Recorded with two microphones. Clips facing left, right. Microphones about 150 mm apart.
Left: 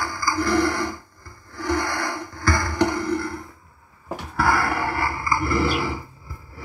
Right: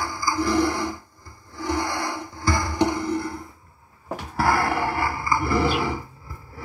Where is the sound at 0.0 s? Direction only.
20° right (ahead or behind).